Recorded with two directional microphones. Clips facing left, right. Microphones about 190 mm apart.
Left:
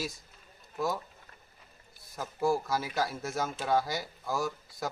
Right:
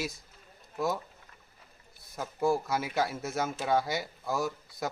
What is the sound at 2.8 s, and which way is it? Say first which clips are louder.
Speech: right 2 dB; 20° right (ahead or behind).